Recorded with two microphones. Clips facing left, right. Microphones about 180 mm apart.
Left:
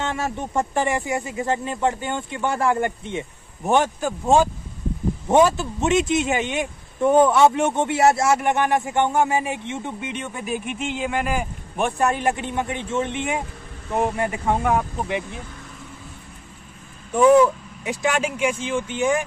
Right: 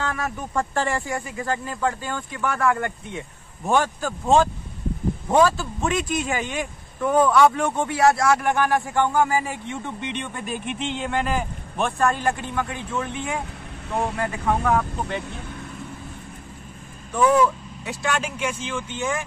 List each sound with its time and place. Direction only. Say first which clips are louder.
0.0 s speech: left 2 dB; 25° left (ahead or behind)
9.9 s speech: even; 5° left (ahead or behind)
17.1 s speech: left 4 dB; 20° left (ahead or behind)